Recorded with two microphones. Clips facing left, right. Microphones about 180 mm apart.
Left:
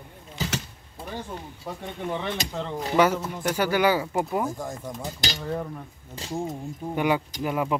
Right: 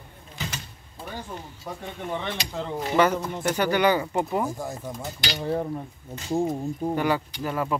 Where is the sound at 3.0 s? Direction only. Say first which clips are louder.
Left 1 dB; 10° left (ahead or behind); by 5.0 s 5° right (ahead or behind).